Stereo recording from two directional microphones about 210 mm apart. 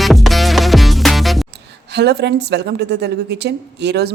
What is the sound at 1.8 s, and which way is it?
A woman's voice, 50° right (ahead or behind).